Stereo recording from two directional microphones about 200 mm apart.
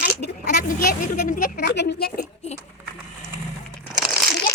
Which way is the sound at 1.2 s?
40° left (ahead or behind).